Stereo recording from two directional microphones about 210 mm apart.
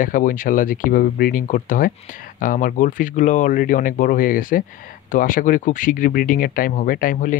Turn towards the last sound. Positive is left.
turn(degrees=40)  # may be behind; listen again after turning